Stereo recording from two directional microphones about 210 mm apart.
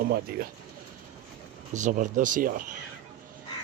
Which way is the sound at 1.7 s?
35° right (ahead or behind).